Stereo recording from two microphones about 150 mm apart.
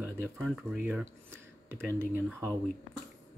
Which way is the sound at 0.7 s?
10° right (ahead or behind).